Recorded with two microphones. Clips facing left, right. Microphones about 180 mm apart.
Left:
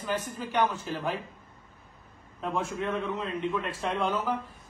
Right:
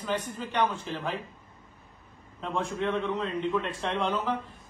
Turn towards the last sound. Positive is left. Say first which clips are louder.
# even
turn(degrees=5)  # may be behind; listen again after turning